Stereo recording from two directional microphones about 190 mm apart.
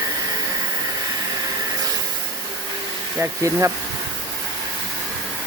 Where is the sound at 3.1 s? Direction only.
15° right (ahead or behind).